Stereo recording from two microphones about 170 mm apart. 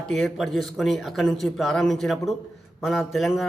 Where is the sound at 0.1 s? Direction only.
Centre (ahead or behind).